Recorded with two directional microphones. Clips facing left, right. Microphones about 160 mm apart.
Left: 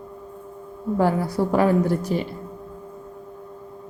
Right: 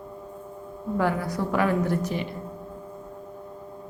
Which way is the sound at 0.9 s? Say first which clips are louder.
Left 4 dB; 30° left (ahead or behind).